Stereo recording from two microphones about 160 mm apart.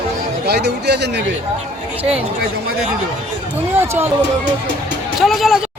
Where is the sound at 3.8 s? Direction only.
15° right (ahead or behind).